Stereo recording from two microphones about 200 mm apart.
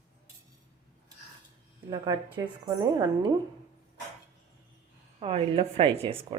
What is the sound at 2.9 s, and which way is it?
Speech, 20° right (ahead or behind).